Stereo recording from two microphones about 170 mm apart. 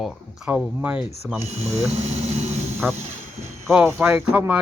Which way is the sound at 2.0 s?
40° right (ahead or behind).